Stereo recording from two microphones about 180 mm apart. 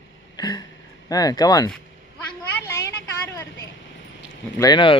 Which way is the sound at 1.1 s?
20° left (ahead or behind).